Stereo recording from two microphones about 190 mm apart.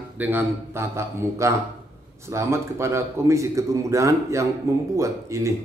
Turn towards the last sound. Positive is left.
turn(degrees=-15)  # may be behind; listen again after turning